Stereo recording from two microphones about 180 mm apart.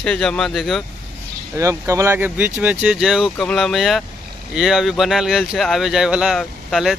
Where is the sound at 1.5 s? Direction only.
15° right (ahead or behind).